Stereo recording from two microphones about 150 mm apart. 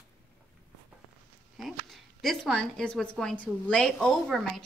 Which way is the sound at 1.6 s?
Centre (ahead or behind).